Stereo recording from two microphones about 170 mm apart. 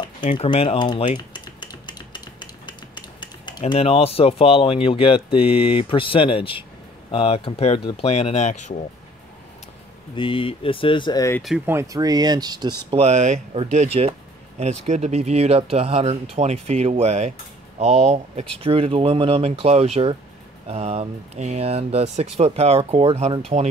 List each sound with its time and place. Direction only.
0.2 s speech: 45° left (ahead or behind)
0.5 s speech: 30° left (ahead or behind)
1.1 s dishes: 25° left (ahead or behind)
7.1 s speech: 35° left (ahead or behind)
10.1 s speech: 30° left (ahead or behind)
11.6 s speech: 15° right (ahead or behind)
12.9 s speech: 40° right (ahead or behind)